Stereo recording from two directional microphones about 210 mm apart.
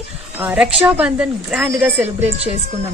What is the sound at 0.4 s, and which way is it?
A woman's voice, 5° right (ahead or behind).